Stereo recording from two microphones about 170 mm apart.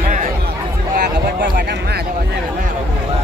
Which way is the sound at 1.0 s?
80° right.